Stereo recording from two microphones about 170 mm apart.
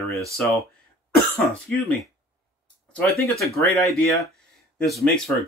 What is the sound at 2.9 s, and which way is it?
Speech, centre (ahead or behind).